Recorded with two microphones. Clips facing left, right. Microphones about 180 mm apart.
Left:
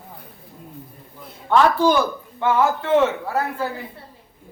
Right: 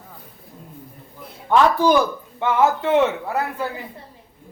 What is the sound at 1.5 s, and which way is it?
A man's voice, 15° right (ahead or behind).